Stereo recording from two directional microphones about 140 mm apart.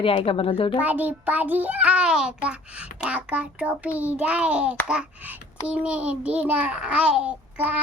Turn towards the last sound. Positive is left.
turn(degrees=-10)  # may be behind; listen again after turning